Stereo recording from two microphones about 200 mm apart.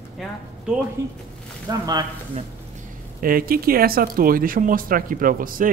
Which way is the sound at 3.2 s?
45° right (ahead or behind).